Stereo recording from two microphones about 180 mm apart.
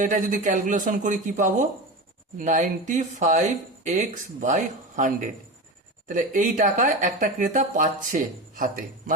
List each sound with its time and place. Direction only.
0.0 s speech: 45° right (ahead or behind)